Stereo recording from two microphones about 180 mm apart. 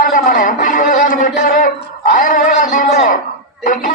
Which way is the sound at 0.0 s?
50° left (ahead or behind).